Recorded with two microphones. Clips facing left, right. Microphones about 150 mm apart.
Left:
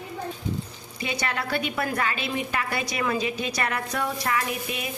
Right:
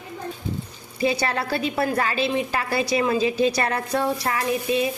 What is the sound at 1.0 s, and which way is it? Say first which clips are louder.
A woman's voice: right 6 dB; 35° right (ahead or behind).